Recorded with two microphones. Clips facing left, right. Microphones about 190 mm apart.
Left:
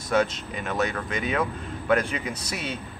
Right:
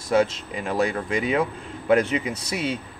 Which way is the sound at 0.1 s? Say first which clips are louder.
Right 3 dB; 30° right (ahead or behind).